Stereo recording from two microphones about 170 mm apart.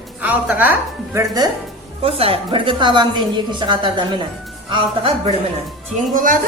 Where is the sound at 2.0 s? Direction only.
35° right (ahead or behind).